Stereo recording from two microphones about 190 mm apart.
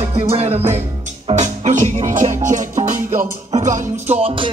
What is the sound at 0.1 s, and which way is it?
Music, 30° right (ahead or behind).